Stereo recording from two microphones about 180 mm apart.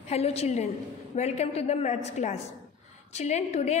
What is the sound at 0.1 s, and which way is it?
A woman's voice, 35° left (ahead or behind).